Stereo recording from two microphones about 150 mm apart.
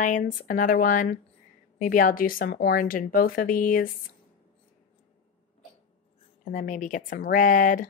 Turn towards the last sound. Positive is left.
turn(degrees=60)  # may be behind; listen again after turning